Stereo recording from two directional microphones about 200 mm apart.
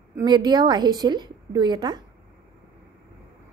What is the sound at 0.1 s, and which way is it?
A woman's voice, 20° right (ahead or behind).